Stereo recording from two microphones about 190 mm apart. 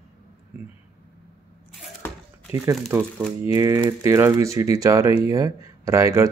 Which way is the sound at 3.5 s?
15° right (ahead or behind).